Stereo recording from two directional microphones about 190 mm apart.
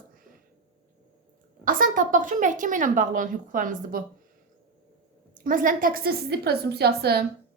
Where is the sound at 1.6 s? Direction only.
45° right (ahead or behind).